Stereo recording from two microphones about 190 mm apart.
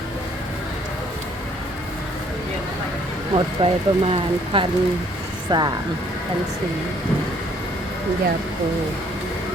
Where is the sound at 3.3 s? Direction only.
30° right (ahead or behind).